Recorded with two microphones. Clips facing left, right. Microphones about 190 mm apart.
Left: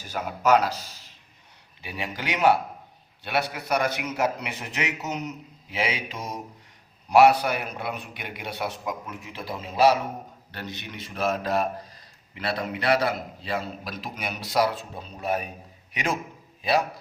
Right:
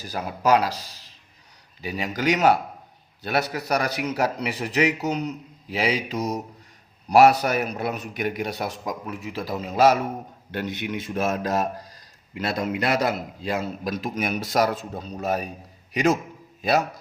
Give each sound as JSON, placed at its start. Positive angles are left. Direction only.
{"t": 0.0, "sound": "a man's voice", "side_deg": -35}